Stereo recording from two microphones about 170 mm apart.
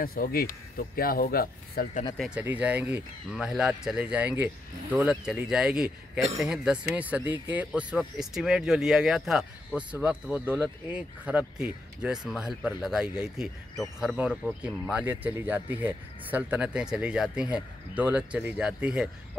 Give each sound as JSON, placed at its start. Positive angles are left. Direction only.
{"t": 0.0, "sound": "speech", "side_deg": 60}
{"t": 2.1, "sound": "speech", "side_deg": -5}